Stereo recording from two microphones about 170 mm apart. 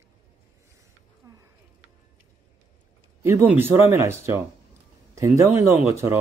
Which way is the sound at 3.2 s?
15° right (ahead or behind).